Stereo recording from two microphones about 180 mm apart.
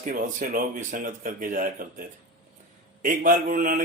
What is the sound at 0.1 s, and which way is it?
A man's voice, 50° right (ahead or behind).